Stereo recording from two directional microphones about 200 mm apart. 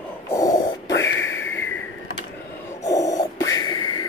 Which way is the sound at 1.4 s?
10° left (ahead or behind).